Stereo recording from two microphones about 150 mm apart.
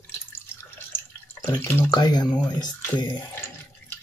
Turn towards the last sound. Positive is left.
turn(degrees=30)  # may be behind; listen again after turning